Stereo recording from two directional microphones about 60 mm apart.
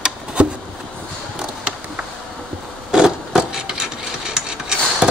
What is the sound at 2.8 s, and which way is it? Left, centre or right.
Wood, centre.